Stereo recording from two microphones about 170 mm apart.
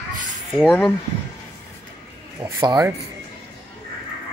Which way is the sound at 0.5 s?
5° left (ahead or behind).